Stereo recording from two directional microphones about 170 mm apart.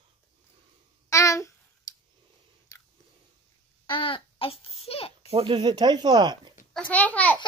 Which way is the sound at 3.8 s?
30° left (ahead or behind).